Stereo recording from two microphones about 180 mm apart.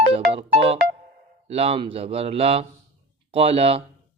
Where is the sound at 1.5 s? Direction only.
35° right (ahead or behind).